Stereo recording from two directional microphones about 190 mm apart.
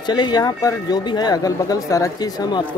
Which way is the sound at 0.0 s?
25° left (ahead or behind).